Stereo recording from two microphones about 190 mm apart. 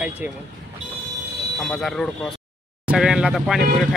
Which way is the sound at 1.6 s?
Centre (ahead or behind).